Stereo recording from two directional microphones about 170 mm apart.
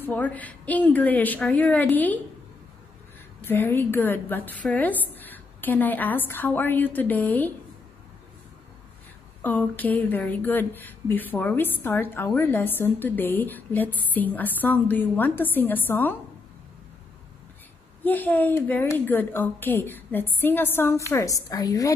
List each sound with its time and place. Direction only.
0.0 s speech: 10° left (ahead or behind)
3.4 s speech: 10° left (ahead or behind)
9.4 s speech: 10° left (ahead or behind)
18.0 s a woman's voice: 10° left (ahead or behind)